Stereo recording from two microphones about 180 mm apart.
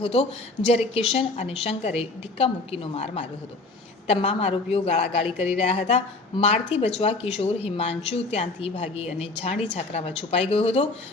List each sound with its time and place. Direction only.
0.0 s speech: 30° left (ahead or behind)